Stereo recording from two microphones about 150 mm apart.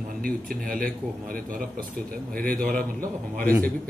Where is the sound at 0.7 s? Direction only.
70° right (ahead or behind).